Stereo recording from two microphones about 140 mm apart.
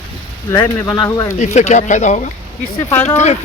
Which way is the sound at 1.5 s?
60° left (ahead or behind).